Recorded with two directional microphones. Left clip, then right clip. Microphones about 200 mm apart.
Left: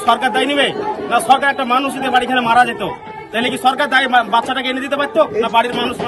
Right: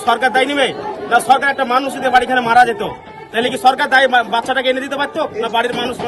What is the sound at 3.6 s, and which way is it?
A man's voice, 10° right (ahead or behind).